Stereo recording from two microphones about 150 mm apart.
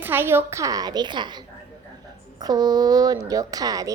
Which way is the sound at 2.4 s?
25° right (ahead or behind).